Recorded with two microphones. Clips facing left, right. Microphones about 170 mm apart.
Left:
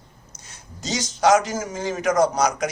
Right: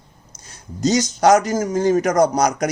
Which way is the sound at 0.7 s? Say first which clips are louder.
Right 9 dB; 40° right (ahead or behind).